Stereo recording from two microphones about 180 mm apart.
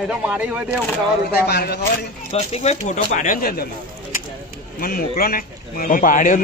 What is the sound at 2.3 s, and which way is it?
A man's voice, 35° left (ahead or behind).